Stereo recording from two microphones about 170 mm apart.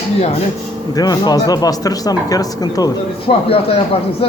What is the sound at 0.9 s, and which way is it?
Speech, 25° left (ahead or behind).